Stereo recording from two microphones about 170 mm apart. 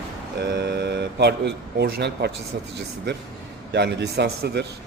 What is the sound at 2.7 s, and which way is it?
A man's voice, 90° right.